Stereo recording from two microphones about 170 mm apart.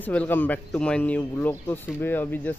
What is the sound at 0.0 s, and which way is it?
Speech, 10° left (ahead or behind).